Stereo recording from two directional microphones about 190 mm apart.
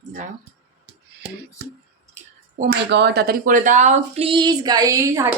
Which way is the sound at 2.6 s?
65° right (ahead or behind).